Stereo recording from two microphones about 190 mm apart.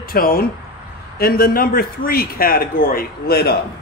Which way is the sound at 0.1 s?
50° left (ahead or behind).